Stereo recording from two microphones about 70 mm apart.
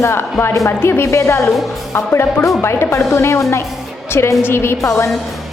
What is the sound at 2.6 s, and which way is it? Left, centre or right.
A woman's voice, left.